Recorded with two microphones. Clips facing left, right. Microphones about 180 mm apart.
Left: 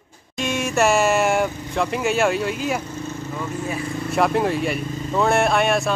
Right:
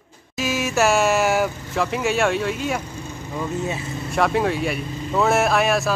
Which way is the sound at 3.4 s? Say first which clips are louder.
Right 3 dB; 25° right (ahead or behind).